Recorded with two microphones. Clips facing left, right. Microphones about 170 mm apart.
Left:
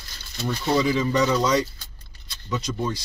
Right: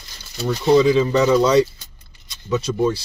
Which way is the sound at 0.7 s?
20° right (ahead or behind).